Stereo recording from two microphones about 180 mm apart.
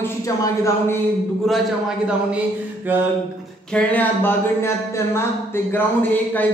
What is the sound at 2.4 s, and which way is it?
Mantra, 10° right (ahead or behind).